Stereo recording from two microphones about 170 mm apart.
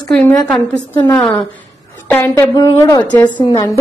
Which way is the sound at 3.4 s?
25° left (ahead or behind).